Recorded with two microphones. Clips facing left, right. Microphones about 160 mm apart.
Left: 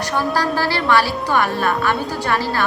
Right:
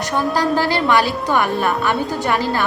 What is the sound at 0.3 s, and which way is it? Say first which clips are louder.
A woman's voice: right 2 dB; 20° right (ahead or behind).